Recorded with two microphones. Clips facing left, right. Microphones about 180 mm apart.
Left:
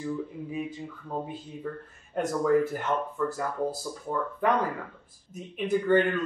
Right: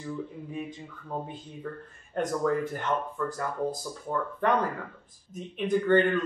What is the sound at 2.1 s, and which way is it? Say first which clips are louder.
Speech: left 3 dB; 5° left (ahead or behind).